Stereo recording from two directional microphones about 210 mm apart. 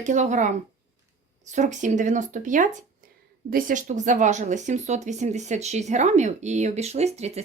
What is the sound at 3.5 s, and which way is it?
Speech, 35° right (ahead or behind).